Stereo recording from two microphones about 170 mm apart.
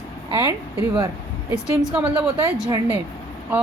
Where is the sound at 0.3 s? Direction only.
20° right (ahead or behind).